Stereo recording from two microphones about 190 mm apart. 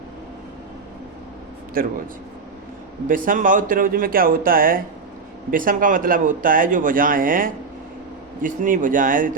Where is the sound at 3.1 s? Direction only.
45° right (ahead or behind).